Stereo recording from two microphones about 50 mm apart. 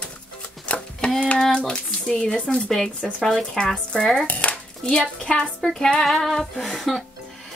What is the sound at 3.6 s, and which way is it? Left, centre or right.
Speech, centre.